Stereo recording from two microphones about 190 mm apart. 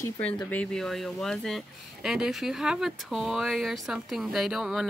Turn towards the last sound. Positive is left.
turn(degrees=-5)  # may be behind; listen again after turning